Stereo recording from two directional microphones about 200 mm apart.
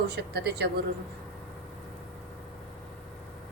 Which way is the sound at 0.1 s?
55° right (ahead or behind).